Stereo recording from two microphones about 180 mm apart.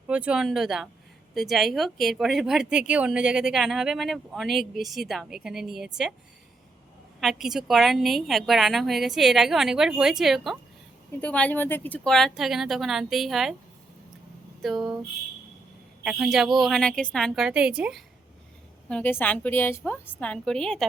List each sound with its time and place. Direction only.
0.1 s speech: 5° right (ahead or behind)
7.2 s speech: centre (ahead or behind)
14.6 s a sound: centre (ahead or behind)
16.0 s speech: 5° right (ahead or behind)
18.9 s a woman's voice: 5° left (ahead or behind)